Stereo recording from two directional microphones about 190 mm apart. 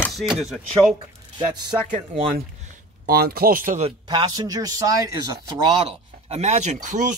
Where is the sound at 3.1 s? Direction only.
55° right (ahead or behind).